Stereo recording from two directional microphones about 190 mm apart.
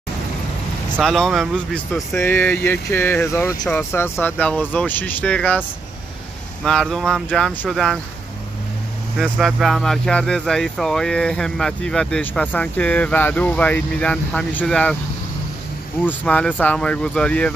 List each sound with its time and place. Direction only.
1.0 s speech: centre (ahead or behind)
6.6 s speech: centre (ahead or behind)
9.2 s speech: centre (ahead or behind)
16.1 s speech: 5° left (ahead or behind)